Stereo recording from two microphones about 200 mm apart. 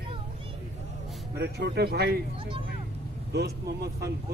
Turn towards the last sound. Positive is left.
turn(degrees=-55)  # may be behind; listen again after turning